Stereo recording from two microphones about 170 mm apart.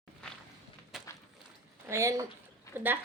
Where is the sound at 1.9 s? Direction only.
15° right (ahead or behind).